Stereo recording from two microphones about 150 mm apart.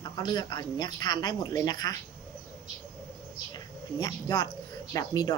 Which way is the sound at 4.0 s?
30° left (ahead or behind).